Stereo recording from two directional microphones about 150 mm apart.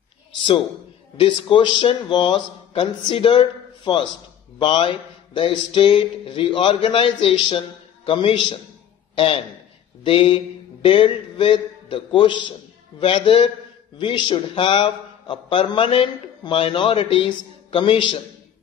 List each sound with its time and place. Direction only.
1.2 s a man's voice: 30° left (ahead or behind)